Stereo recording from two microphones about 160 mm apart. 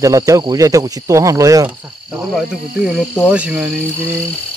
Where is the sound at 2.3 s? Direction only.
Centre (ahead or behind).